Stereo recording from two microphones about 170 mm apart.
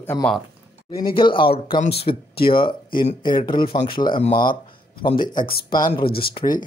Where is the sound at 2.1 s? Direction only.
40° left (ahead or behind).